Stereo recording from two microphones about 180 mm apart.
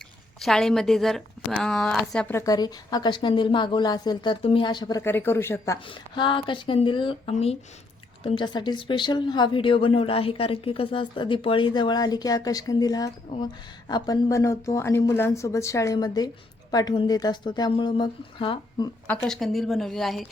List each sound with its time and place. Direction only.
0.3 s a woman's voice: centre (ahead or behind)
5.8 s a woman's voice: 30° left (ahead or behind)
19.0 s a woman's voice: 5° left (ahead or behind)